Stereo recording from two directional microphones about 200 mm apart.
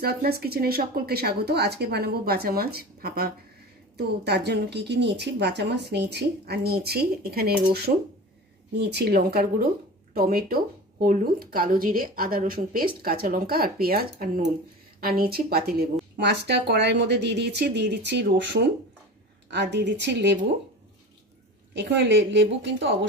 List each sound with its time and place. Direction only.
0.0 s speech: 50° right (ahead or behind)
8.7 s speech: 55° right (ahead or behind)
21.7 s speech: 60° right (ahead or behind)